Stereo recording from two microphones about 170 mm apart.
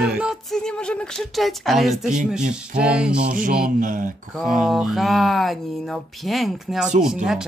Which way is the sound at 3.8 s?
50° right (ahead or behind).